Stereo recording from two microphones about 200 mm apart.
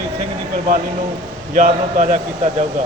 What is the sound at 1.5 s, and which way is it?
Speech, 35° right (ahead or behind).